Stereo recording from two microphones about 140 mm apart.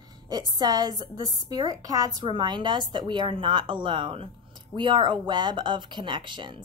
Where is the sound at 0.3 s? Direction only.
30° right (ahead or behind).